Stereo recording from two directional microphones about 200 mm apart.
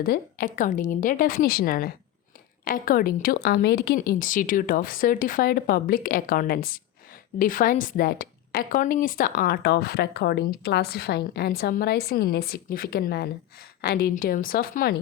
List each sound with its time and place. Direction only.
0.0 s a woman's voice: 45° left (ahead or behind)